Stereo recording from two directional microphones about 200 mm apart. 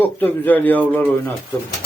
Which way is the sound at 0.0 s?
10° left (ahead or behind).